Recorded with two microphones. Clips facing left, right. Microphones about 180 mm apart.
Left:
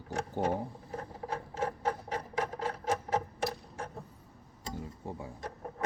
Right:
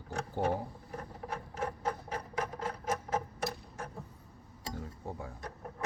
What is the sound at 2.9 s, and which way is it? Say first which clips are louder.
Clock: left 2 dB; 30° left (ahead or behind).